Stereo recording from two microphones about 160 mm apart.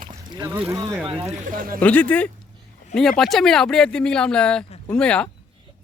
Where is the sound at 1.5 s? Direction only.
60° right (ahead or behind).